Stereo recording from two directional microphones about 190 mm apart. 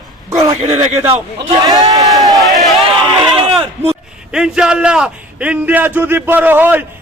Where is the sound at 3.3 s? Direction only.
30° right (ahead or behind).